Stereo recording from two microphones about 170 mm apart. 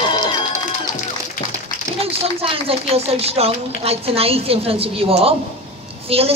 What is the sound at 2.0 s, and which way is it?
A woman's voice, 35° right (ahead or behind).